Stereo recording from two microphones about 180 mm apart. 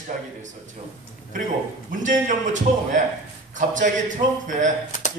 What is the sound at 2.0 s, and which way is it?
A man's voice, 45° right (ahead or behind).